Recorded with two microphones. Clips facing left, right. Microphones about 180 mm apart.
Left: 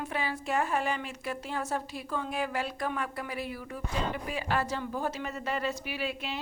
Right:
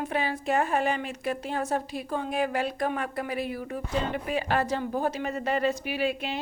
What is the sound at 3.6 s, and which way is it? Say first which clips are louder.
Speech: right 5 dB; 50° right (ahead or behind).